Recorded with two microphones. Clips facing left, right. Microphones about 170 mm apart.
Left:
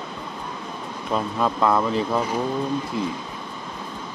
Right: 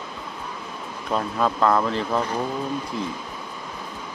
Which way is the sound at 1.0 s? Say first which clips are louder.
Even; 5° left (ahead or behind).